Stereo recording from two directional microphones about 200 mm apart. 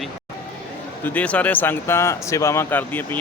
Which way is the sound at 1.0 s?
5° left (ahead or behind).